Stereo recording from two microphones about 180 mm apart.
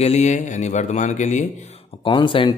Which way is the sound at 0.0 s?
40° left (ahead or behind).